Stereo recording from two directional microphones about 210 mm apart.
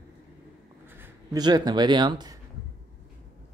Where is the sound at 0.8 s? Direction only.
10° right (ahead or behind).